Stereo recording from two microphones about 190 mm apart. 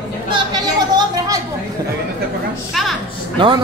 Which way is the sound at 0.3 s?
20° right (ahead or behind).